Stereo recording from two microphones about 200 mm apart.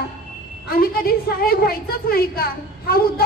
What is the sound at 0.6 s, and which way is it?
A woman's voice, 50° left (ahead or behind).